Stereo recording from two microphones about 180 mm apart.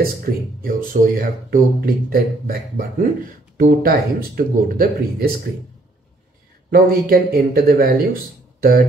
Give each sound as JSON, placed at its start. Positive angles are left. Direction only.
{"t": 0.0, "sound": "speech", "side_deg": -55}
{"t": 6.7, "sound": "speech", "side_deg": -55}